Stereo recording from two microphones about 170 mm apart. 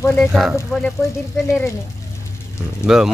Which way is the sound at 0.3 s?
5° right (ahead or behind).